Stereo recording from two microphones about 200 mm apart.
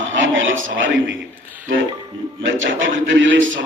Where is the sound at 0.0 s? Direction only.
70° right (ahead or behind).